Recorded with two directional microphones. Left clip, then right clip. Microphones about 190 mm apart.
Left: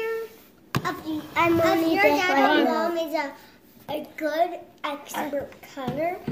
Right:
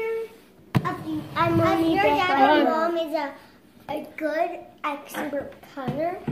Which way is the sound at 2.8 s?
Centre (ahead or behind).